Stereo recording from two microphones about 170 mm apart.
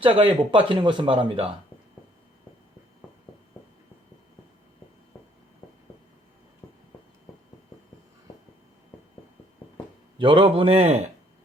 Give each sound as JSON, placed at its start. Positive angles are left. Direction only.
{"t": 0.0, "sound": "speech", "side_deg": -30}
{"t": 10.2, "sound": "speech", "side_deg": -30}